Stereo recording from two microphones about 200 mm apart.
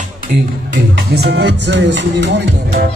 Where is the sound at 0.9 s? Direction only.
55° right (ahead or behind).